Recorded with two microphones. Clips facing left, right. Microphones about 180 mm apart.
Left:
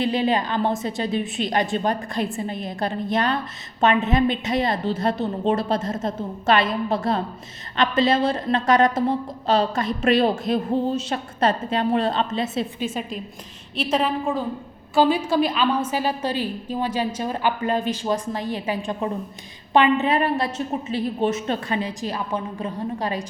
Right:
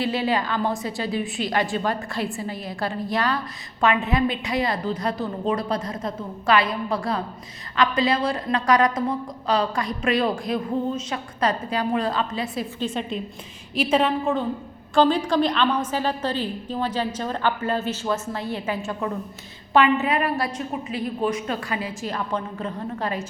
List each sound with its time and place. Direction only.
0.0 s a woman's voice: 20° left (ahead or behind)
12.8 s a woman's voice: 5° left (ahead or behind)